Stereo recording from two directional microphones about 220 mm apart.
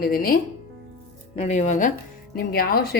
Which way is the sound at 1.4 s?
30° left (ahead or behind).